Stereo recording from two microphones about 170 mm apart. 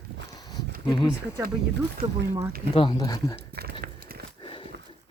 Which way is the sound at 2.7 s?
30° left (ahead or behind).